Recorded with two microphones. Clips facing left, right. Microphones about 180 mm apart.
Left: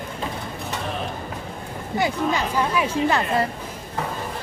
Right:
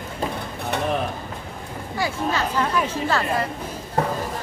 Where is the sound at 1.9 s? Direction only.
20° left (ahead or behind).